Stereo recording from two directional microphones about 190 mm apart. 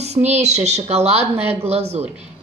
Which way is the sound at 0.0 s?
35° right (ahead or behind).